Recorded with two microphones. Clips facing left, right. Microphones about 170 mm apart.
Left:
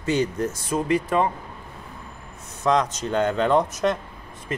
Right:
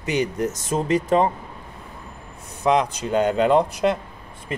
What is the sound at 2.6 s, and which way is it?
Speech, 10° right (ahead or behind).